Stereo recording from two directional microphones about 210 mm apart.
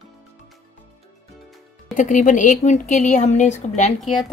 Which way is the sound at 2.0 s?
35° left (ahead or behind).